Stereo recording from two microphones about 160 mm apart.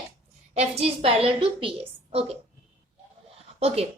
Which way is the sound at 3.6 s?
40° right (ahead or behind).